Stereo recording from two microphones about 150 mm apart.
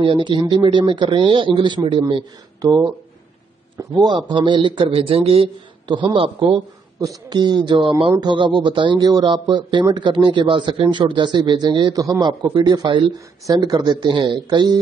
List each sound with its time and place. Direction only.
0.0 s speech: 35° right (ahead or behind)
7.0 s speech: 25° right (ahead or behind)